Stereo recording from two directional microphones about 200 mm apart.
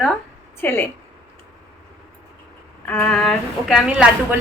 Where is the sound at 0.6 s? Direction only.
10° left (ahead or behind).